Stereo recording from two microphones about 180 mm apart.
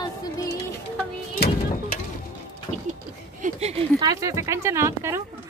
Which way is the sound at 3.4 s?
35° right (ahead or behind).